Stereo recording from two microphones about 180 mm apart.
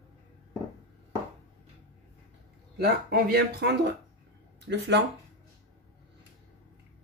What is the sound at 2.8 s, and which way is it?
Speech, 60° right (ahead or behind).